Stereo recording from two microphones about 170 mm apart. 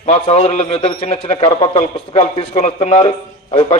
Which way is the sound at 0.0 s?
40° left (ahead or behind).